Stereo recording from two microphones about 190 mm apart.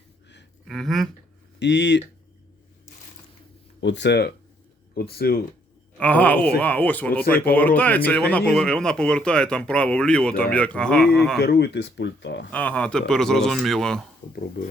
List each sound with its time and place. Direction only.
0.7 s a sound: centre (ahead or behind)
1.5 s speech: 65° left (ahead or behind)
3.8 s speech: 70° left (ahead or behind)
6.0 s speech: 10° left (ahead or behind)
11.3 s speech: 60° left (ahead or behind)
12.5 s speech: 10° left (ahead or behind)